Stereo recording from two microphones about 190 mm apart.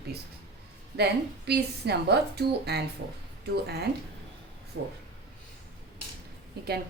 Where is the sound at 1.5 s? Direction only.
60° right (ahead or behind).